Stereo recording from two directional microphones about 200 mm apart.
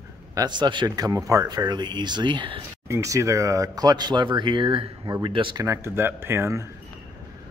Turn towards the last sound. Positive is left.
turn(degrees=-15)  # may be behind; listen again after turning